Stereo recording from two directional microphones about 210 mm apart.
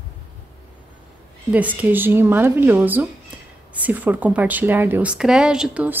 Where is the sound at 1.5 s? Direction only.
5° right (ahead or behind).